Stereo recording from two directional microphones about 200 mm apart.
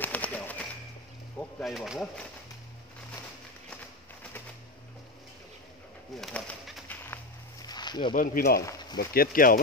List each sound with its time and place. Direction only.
0.0 s bird: 10° left (ahead or behind)
1.4 s speech: centre (ahead or behind)
3.7 s a sound: 5° left (ahead or behind)
6.2 s bird: 5° left (ahead or behind)
7.6 s snake: 20° left (ahead or behind)
8.1 s speech: 45° left (ahead or behind)